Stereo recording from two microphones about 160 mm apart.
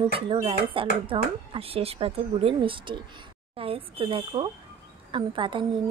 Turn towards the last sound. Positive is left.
turn(degrees=-30)  # may be behind; listen again after turning